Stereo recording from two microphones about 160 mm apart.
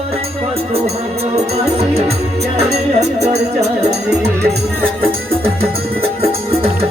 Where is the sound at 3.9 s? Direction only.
90° right.